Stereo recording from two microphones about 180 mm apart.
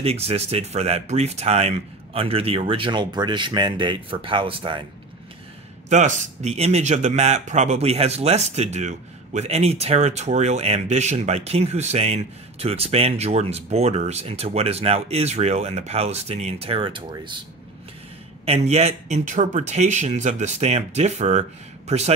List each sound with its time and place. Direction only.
0.0 s a man's voice: 35° right (ahead or behind)
5.9 s a man's voice: 40° right (ahead or behind); by 17.4 s 25° right (ahead or behind)
18.4 s a man's voice: 35° right (ahead or behind)